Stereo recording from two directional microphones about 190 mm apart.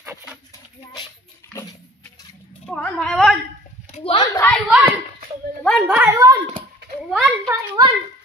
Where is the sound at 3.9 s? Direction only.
30° left (ahead or behind).